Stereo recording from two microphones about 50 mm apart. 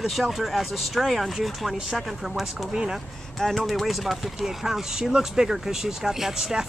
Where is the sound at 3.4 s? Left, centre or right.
Centre.